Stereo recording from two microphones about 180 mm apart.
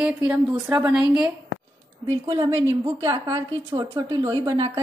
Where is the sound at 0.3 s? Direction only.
5° right (ahead or behind).